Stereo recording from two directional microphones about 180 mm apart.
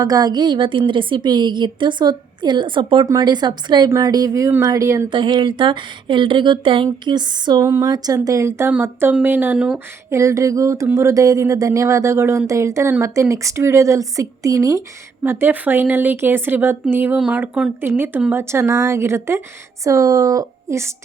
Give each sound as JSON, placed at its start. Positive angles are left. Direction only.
{"t": 0.0, "sound": "a woman's voice", "side_deg": -20}